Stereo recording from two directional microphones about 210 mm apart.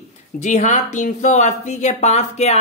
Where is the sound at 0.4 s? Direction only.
35° left (ahead or behind).